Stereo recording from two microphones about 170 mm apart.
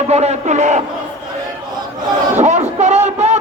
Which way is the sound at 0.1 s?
40° right (ahead or behind).